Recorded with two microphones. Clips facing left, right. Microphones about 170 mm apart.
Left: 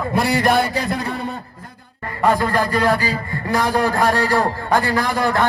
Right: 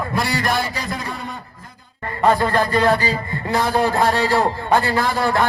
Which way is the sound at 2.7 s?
25° right (ahead or behind).